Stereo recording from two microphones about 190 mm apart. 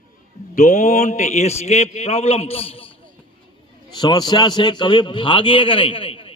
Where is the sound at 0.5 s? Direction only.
40° left (ahead or behind).